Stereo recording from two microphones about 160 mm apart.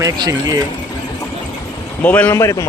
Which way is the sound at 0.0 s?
20° right (ahead or behind).